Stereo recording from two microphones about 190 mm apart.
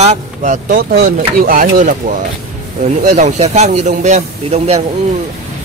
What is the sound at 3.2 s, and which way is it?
A man's voice, 40° right (ahead or behind).